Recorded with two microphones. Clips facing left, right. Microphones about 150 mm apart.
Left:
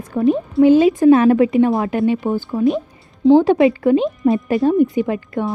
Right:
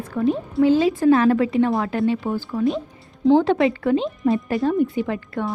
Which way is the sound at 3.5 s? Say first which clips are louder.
Left 5 dB; 20° left (ahead or behind).